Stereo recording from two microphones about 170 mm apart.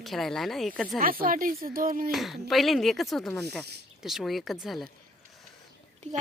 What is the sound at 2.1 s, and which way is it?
Speech, centre (ahead or behind).